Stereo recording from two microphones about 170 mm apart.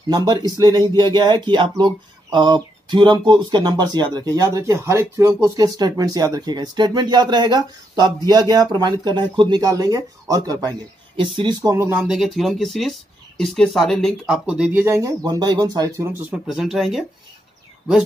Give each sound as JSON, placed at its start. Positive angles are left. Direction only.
{"t": 0.1, "sound": "speech", "side_deg": -25}
{"t": 16.4, "sound": "speech", "side_deg": 0}